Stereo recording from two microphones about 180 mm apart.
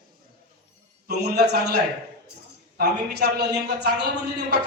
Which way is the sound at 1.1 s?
65° right (ahead or behind).